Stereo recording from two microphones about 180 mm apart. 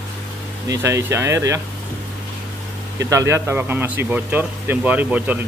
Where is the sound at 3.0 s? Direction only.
15° right (ahead or behind).